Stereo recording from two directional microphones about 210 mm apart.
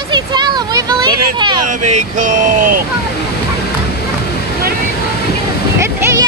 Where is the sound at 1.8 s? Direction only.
35° right (ahead or behind).